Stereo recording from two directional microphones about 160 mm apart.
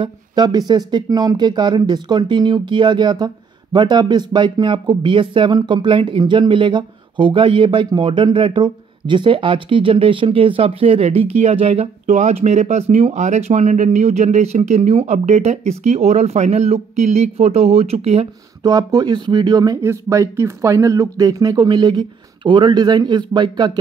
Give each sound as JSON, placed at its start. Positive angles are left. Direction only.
{"t": 0.0, "sound": "speech", "side_deg": -25}
{"t": 18.6, "sound": "speech", "side_deg": -25}